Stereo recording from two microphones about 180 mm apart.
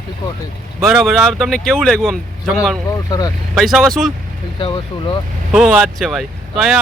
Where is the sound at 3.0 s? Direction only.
20° left (ahead or behind).